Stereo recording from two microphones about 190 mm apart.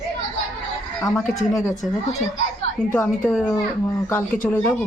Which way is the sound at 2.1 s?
35° left (ahead or behind).